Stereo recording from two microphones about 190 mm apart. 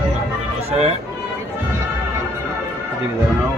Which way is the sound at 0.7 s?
30° right (ahead or behind).